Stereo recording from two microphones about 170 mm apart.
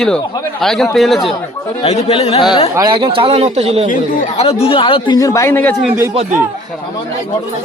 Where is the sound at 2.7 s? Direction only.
25° right (ahead or behind).